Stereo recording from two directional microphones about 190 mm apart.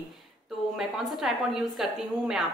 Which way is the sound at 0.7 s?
Centre (ahead or behind).